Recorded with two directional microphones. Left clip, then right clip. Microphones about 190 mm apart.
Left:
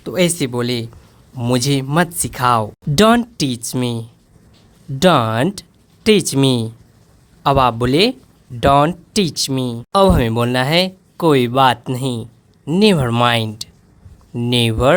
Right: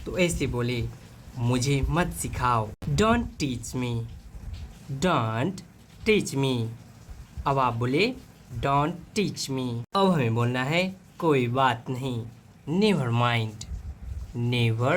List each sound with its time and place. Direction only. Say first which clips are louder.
0.0 s speech: left 9 dB; 50° left (ahead or behind)